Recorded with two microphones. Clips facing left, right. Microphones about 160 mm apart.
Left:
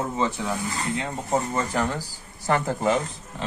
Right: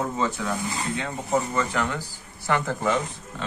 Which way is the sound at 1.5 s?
30° left (ahead or behind).